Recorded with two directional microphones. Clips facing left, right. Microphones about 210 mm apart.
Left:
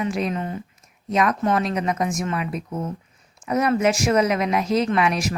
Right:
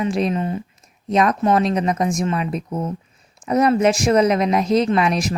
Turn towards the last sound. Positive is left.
turn(degrees=-35)  # may be behind; listen again after turning